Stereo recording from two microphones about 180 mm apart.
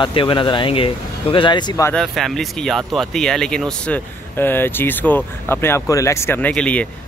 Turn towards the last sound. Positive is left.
turn(degrees=5)  # may be behind; listen again after turning